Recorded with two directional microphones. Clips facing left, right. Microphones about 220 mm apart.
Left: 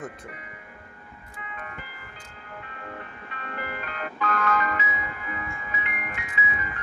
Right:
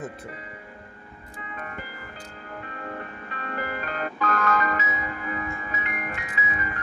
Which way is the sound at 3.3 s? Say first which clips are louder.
Right 3 dB; 45° right (ahead or behind).